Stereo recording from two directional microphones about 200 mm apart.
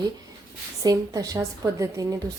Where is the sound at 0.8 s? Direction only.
20° right (ahead or behind).